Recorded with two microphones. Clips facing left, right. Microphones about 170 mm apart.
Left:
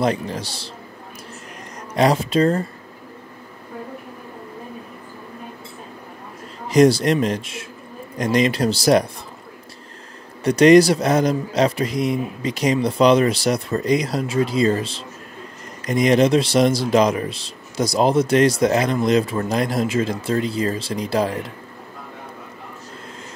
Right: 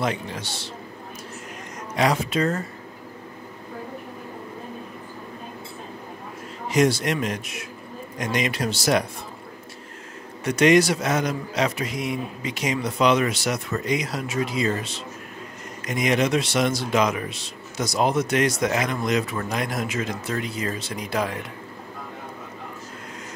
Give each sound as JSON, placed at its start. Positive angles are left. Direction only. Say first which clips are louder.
{"t": 0.0, "sound": "a man's voice", "louder": "left 5 dB", "side_deg": 35}
{"t": 2.0, "sound": "a man's voice", "louder": "left 5 dB", "side_deg": 35}
{"t": 6.7, "sound": "a man's voice", "louder": "left 6 dB", "side_deg": 35}
{"t": 10.4, "sound": "a man's voice", "louder": "left 6 dB", "side_deg": 35}